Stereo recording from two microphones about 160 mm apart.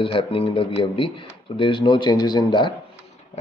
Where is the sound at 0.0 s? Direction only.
35° left (ahead or behind).